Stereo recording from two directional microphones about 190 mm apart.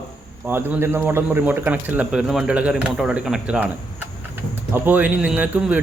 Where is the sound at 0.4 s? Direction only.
10° right (ahead or behind).